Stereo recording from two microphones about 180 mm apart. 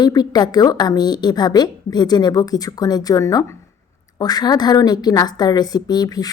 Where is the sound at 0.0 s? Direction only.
20° left (ahead or behind).